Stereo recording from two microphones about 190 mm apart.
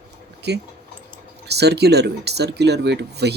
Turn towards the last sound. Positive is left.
turn(degrees=-60)  # may be behind; listen again after turning